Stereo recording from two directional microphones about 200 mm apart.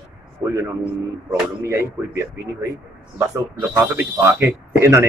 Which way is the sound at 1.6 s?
15° right (ahead or behind).